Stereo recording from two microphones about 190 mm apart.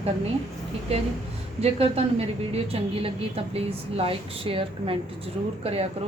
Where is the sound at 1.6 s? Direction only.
30° right (ahead or behind).